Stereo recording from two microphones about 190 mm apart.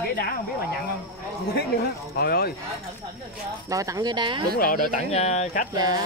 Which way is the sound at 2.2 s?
50° left (ahead or behind).